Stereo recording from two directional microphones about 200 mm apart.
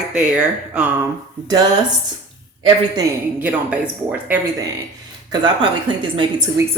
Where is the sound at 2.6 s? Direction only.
25° right (ahead or behind).